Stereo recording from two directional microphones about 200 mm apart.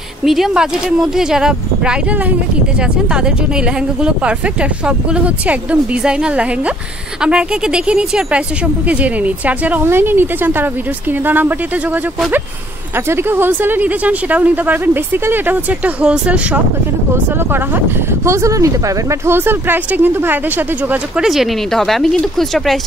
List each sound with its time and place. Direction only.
0.2 s speech: centre (ahead or behind)
4.0 s speech: 5° right (ahead or behind)
18.2 s speech: 15° right (ahead or behind); by 22.8 s centre (ahead or behind)